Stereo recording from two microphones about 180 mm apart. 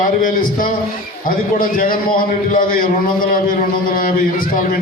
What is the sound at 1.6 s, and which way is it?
Speech, 50° left (ahead or behind).